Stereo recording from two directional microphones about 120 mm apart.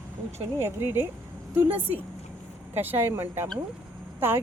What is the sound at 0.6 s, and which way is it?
Speech, 20° right (ahead or behind).